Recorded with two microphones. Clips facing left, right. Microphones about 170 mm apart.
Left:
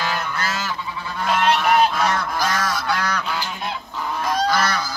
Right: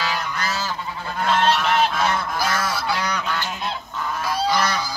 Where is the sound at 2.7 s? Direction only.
10° right (ahead or behind).